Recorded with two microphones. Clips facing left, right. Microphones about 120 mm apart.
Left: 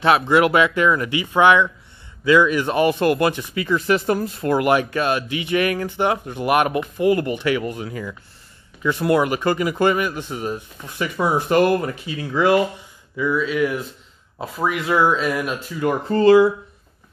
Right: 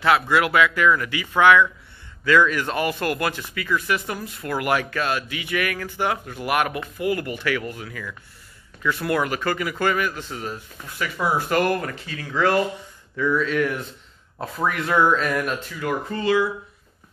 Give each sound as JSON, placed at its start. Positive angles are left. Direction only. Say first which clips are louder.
{"t": 0.0, "sound": "speech", "louder": "left 4 dB", "side_deg": 25}
{"t": 15.8, "sound": "speech", "louder": "left 10 dB", "side_deg": 40}